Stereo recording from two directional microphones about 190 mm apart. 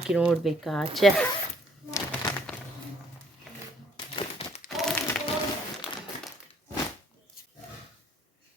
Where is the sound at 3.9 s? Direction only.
30° left (ahead or behind).